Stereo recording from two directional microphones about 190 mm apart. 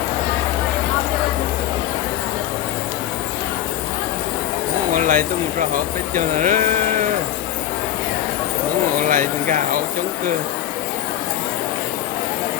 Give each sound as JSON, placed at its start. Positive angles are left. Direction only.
{"t": 4.9, "sound": "speech", "side_deg": -45}
{"t": 9.0, "sound": "speech", "side_deg": -45}